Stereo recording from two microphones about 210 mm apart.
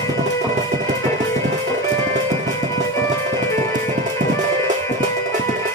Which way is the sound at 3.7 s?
35° right (ahead or behind).